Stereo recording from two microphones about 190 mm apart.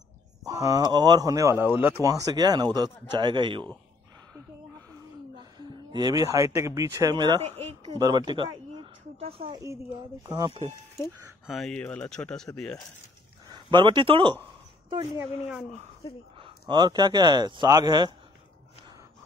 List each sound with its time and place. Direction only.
0.5 s speech: 20° right (ahead or behind)
5.3 s speech: 25° right (ahead or behind)
7.4 s speech: 35° right (ahead or behind)
9.6 s speech: 15° right (ahead or behind)
11.4 s speech: centre (ahead or behind)
13.5 s speech: 25° right (ahead or behind)
16.0 s speech: 30° left (ahead or behind)
16.3 s speech: 25° right (ahead or behind)